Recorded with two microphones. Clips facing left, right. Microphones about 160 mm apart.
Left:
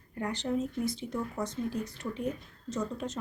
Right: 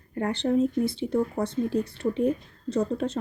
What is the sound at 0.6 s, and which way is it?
Speech, 30° right (ahead or behind).